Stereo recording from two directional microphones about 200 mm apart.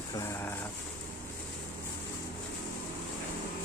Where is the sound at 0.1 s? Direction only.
15° left (ahead or behind).